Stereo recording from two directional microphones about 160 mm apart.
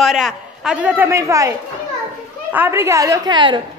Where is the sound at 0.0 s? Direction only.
Centre (ahead or behind); by 1.5 s 20° right (ahead or behind).